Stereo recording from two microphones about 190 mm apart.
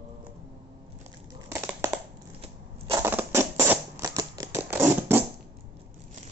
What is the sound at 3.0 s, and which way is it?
Scissors, 10° right (ahead or behind).